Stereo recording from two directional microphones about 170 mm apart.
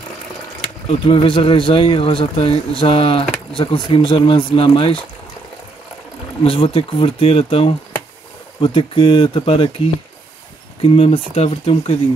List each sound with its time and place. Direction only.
0.8 s speech: 30° left (ahead or behind)
6.4 s speech: 35° left (ahead or behind)
10.8 s speech: 35° left (ahead or behind)